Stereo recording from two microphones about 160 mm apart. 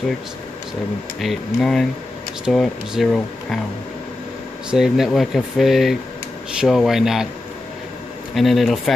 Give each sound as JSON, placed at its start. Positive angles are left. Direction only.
{"t": 1.2, "sound": "speech", "side_deg": 0}
{"t": 4.6, "sound": "speech", "side_deg": -5}
{"t": 8.4, "sound": "speech", "side_deg": 0}